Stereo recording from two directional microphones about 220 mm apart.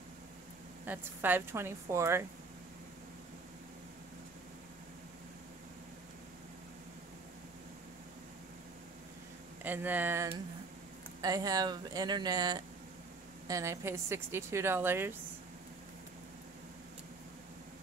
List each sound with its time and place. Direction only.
0.8 s a woman's voice: 10° right (ahead or behind)
9.6 s a woman's voice: 10° right (ahead or behind)